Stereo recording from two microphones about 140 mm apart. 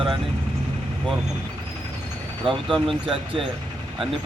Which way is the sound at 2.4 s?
Centre (ahead or behind).